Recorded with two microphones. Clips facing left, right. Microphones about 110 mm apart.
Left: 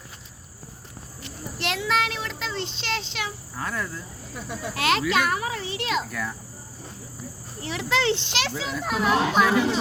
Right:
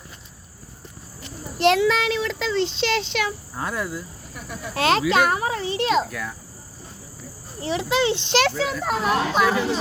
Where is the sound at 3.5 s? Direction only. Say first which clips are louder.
Even; 20° right (ahead or behind).